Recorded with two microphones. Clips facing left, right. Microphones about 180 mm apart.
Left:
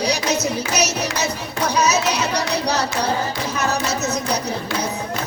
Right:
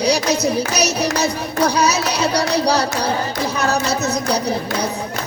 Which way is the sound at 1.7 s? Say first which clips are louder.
Right 1 dB; 35° right (ahead or behind).